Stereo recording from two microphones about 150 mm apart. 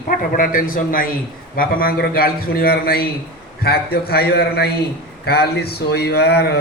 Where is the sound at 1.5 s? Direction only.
85° left.